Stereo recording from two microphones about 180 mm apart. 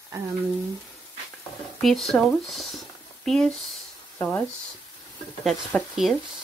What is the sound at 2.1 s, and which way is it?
Speech, centre (ahead or behind).